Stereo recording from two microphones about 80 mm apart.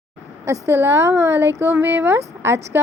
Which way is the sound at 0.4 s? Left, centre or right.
Right.